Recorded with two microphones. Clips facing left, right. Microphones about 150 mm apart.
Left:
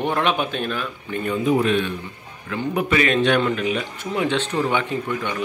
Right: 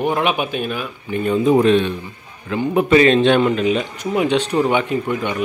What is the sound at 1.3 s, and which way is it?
Speech, 35° right (ahead or behind).